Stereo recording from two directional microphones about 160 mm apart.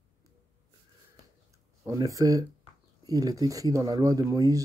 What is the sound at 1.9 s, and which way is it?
Speech, 20° right (ahead or behind).